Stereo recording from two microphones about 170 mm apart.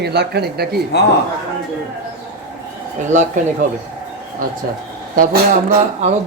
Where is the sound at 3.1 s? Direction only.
45° right (ahead or behind).